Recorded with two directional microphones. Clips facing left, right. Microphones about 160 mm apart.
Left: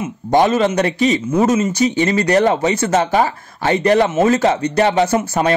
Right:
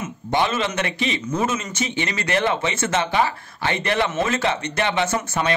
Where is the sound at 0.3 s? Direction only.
45° left (ahead or behind).